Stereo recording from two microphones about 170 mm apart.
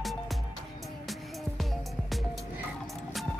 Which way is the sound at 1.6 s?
Centre (ahead or behind).